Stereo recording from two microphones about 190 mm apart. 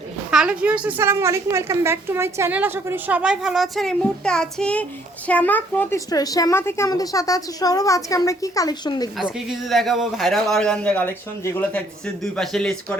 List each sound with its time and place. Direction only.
0.3 s a woman's voice: 5° right (ahead or behind)
6.1 s a woman's voice: 20° left (ahead or behind)
9.1 s a man's voice: centre (ahead or behind)